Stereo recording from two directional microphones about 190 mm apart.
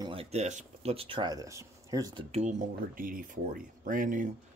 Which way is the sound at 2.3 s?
40° right (ahead or behind).